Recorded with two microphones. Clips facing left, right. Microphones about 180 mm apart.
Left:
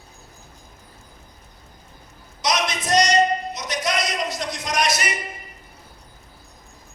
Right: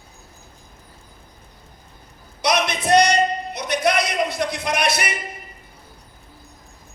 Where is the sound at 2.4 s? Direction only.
60° right (ahead or behind).